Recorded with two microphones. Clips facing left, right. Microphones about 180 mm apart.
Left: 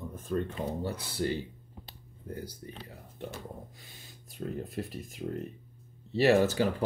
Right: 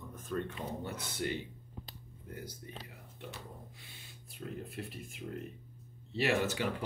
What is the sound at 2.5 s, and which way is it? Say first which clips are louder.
Speech: left 3 dB; 40° left (ahead or behind).